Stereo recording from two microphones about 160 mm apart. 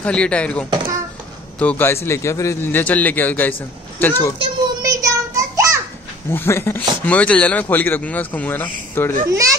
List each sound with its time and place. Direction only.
0.0 s speech: 5° left (ahead or behind)
4.4 s a sound: 20° right (ahead or behind)
6.3 s speech: 15° left (ahead or behind)
9.3 s a child's voice: 20° right (ahead or behind)